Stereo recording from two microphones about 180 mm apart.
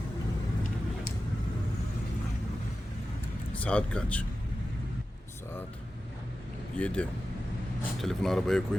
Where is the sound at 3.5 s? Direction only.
5° left (ahead or behind).